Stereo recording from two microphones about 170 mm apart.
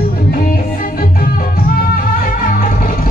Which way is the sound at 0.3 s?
55° left (ahead or behind).